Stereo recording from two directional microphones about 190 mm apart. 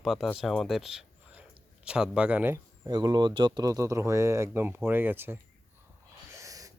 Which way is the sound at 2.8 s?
20° right (ahead or behind).